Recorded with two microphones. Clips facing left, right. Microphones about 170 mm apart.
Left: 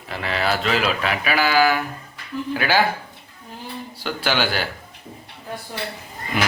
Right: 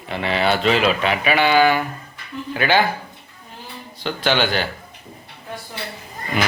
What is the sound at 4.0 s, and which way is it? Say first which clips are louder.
Speech: right 3 dB; 10° left (ahead or behind).